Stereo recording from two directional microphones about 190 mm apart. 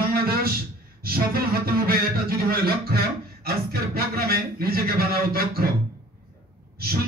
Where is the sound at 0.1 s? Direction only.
50° right (ahead or behind).